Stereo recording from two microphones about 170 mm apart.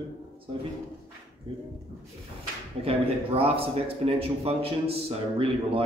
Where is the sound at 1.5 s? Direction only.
30° right (ahead or behind).